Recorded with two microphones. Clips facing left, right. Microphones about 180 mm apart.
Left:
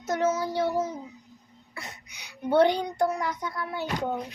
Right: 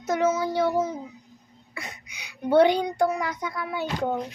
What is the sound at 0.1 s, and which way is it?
Child singing, 70° right (ahead or behind).